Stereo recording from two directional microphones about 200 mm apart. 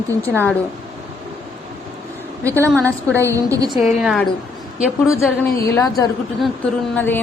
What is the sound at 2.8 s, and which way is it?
Speech, 15° right (ahead or behind).